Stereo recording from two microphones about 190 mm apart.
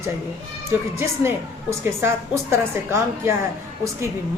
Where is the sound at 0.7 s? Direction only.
15° right (ahead or behind).